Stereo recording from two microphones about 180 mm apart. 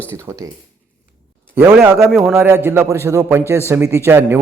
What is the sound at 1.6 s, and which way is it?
Speech, 15° right (ahead or behind).